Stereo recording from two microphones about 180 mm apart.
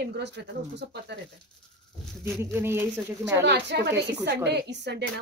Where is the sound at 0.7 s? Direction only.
75° right (ahead or behind).